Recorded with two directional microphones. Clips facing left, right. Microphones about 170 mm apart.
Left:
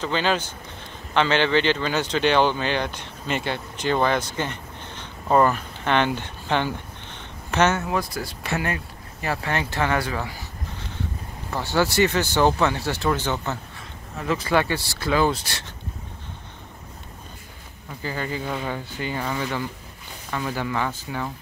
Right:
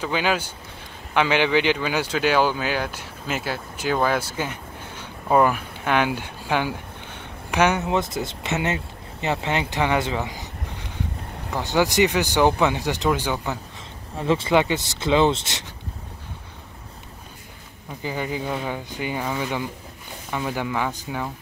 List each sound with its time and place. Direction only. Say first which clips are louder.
0.0 s speech: even; 10° right (ahead or behind)
14.1 s speech: right 3 dB; 30° right (ahead or behind)
18.0 s speech: right 1 dB; 15° right (ahead or behind)